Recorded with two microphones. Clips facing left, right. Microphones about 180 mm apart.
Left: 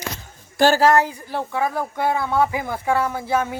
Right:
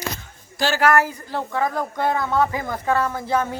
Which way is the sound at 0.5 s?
50° left (ahead or behind).